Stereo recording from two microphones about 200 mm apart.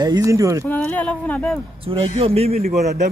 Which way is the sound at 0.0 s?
20° right (ahead or behind).